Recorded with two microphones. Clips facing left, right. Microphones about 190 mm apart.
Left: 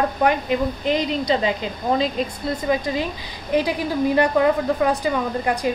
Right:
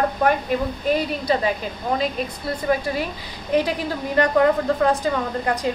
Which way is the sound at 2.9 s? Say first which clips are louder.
Left 1 dB; 20° left (ahead or behind).